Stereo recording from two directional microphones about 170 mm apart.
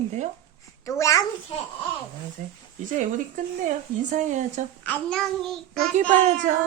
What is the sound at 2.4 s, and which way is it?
A woman's voice, 50° right (ahead or behind).